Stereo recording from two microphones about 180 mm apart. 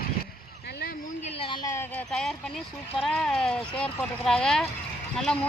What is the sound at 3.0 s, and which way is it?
Speech, 5° left (ahead or behind).